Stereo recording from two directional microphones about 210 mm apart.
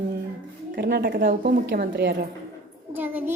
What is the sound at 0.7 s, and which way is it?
Speech, 50° right (ahead or behind).